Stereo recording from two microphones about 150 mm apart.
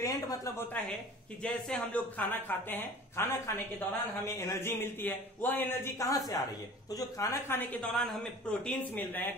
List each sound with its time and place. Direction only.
0.0 s speech: 25° left (ahead or behind)
7.9 s speech: centre (ahead or behind)